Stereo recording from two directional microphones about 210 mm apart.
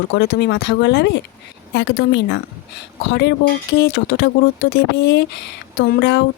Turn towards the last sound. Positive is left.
turn(degrees=55)  # may be behind; listen again after turning